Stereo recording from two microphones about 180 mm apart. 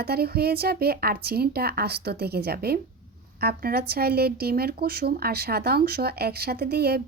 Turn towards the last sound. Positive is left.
turn(degrees=-60)  # may be behind; listen again after turning